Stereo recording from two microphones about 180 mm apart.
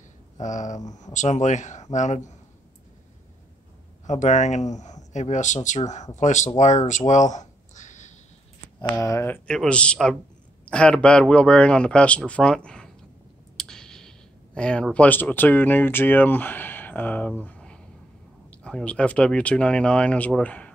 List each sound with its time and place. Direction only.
0.4 s speech: 40° left (ahead or behind)
4.0 s speech: 40° left (ahead or behind)
7.3 s a sound: 40° left (ahead or behind)
9.0 s speech: 15° left (ahead or behind)
17.4 s a sound: 5° left (ahead or behind)
18.5 s speech: 5° left (ahead or behind)